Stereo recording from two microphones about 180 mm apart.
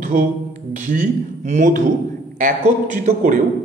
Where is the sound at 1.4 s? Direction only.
40° right (ahead or behind).